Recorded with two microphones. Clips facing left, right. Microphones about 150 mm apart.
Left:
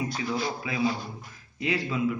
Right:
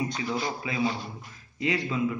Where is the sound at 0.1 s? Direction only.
5° left (ahead or behind).